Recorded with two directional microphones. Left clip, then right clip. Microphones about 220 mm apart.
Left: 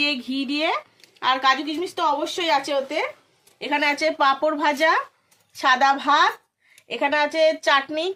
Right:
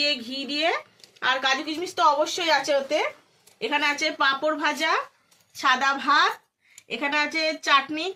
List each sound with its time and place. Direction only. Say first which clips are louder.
0.1 s a woman's voice: left 2 dB; 50° left (ahead or behind)